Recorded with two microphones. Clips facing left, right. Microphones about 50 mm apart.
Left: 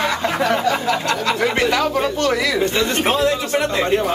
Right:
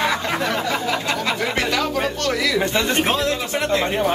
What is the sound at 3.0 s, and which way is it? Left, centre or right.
Speech, centre.